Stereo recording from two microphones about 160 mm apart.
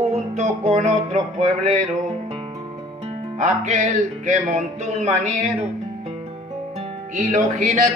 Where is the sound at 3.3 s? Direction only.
45° right (ahead or behind).